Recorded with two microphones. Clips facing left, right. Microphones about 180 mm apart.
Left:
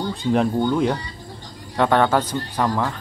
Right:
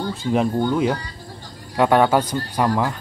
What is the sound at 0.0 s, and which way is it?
Speech, centre (ahead or behind).